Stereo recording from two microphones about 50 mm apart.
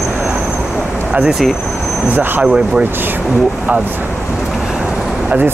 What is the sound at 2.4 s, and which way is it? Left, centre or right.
Speech, centre.